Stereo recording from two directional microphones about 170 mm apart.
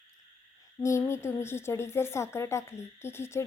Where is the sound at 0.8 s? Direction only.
15° left (ahead or behind).